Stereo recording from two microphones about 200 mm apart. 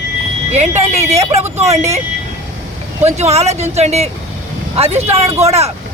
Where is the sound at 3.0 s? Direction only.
35° right (ahead or behind).